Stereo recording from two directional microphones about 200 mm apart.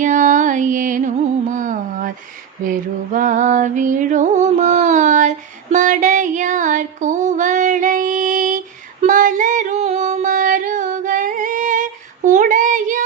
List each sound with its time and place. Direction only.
0.0 s music: 40° right (ahead or behind)
9.0 s female singing: 40° right (ahead or behind)